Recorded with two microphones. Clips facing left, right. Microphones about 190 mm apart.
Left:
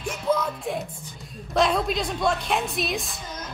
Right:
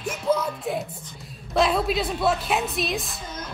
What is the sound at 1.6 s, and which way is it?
A woman's voice, 5° right (ahead or behind).